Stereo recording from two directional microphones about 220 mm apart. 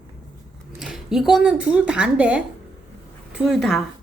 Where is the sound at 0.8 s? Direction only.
Centre (ahead or behind).